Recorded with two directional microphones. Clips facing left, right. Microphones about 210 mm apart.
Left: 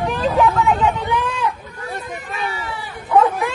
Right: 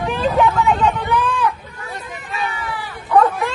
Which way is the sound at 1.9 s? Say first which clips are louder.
Left 3 dB; 50° left (ahead or behind).